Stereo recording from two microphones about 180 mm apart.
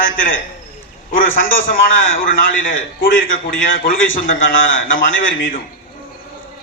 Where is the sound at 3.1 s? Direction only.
90° left.